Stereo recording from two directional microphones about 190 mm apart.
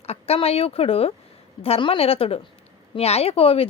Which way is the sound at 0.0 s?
35° left (ahead or behind).